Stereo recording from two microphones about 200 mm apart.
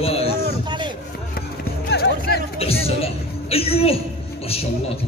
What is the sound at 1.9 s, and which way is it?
Music, 55° left (ahead or behind).